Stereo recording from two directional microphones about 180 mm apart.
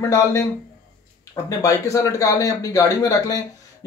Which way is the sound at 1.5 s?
20° left (ahead or behind).